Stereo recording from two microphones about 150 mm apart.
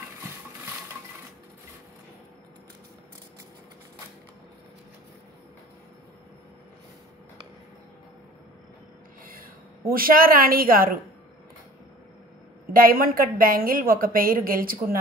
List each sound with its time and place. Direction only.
9.2 s a woman's voice: 70° right (ahead or behind)
12.7 s a woman's voice: 75° right (ahead or behind)